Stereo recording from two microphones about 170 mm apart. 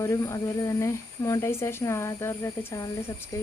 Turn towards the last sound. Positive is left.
turn(degrees=20)  # may be behind; listen again after turning